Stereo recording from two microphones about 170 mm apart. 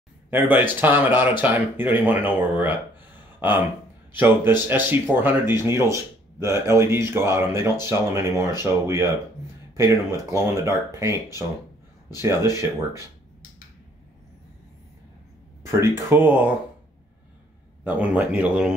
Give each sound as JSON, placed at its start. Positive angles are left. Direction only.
{"t": 0.3, "sound": "speech", "side_deg": -10}
{"t": 10.3, "sound": "speech", "side_deg": -15}
{"t": 12.2, "sound": "speech", "side_deg": -15}
{"t": 15.8, "sound": "speech", "side_deg": -15}
{"t": 17.8, "sound": "speech", "side_deg": -10}